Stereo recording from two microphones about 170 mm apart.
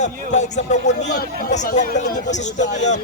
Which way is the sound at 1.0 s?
65° left (ahead or behind).